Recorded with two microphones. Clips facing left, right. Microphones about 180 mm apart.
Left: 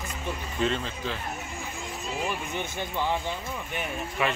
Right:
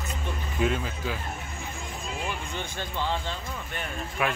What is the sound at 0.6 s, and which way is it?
Speech, 10° right (ahead or behind).